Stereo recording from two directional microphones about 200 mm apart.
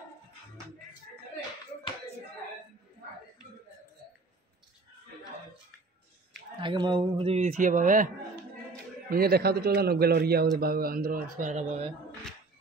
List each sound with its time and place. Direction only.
6.6 s a man's voice: 25° right (ahead or behind); by 8.1 s 40° right (ahead or behind)
9.1 s a man's voice: 50° right (ahead or behind)